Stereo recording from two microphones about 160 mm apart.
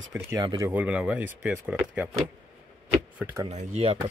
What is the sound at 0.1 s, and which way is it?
Speech, 15° right (ahead or behind).